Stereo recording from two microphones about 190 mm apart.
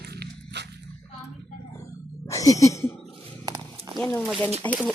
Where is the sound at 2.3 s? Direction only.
15° left (ahead or behind).